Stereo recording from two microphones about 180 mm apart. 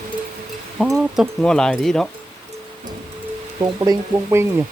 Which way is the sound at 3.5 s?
20° right (ahead or behind).